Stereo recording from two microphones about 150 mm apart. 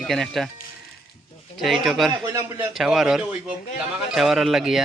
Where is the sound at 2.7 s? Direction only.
Centre (ahead or behind).